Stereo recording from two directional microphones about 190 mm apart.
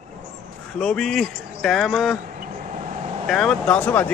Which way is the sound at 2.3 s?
45° right (ahead or behind).